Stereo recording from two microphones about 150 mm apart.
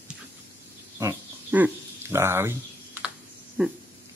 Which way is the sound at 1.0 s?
10° right (ahead or behind).